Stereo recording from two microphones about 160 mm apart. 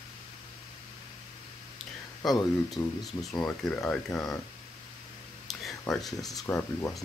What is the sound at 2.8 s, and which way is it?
Speech, 15° left (ahead or behind).